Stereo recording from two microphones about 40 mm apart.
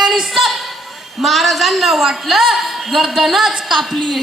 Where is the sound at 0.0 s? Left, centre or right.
Centre.